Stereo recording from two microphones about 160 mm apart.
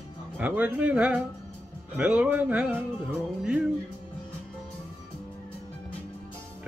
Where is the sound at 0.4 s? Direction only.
10° right (ahead or behind).